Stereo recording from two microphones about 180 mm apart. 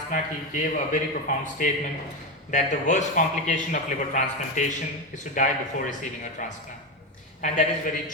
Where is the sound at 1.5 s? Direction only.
45° left (ahead or behind).